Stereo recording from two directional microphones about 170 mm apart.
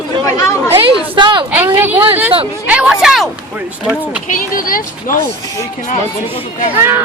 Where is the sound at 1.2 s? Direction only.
30° right (ahead or behind).